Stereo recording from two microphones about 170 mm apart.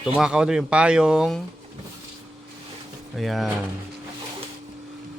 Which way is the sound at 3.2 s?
Centre (ahead or behind).